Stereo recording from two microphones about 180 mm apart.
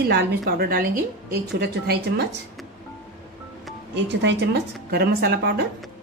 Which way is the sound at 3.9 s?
75° right (ahead or behind).